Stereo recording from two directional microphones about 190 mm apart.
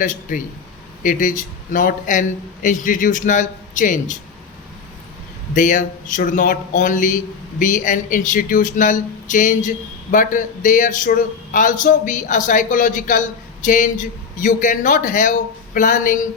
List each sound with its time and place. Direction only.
0.0 s speech: 45° left (ahead or behind)
5.5 s speech: 45° left (ahead or behind)